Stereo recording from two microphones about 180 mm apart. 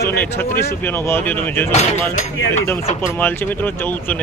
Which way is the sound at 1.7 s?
40° left (ahead or behind).